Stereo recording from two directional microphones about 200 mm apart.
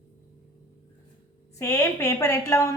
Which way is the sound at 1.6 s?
15° left (ahead or behind).